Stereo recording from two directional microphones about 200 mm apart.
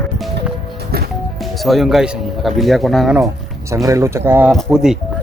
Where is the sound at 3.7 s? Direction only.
15° right (ahead or behind).